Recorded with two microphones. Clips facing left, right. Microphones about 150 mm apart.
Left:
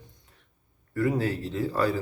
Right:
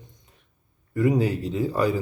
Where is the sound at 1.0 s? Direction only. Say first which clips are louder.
Right 4 dB; 15° right (ahead or behind).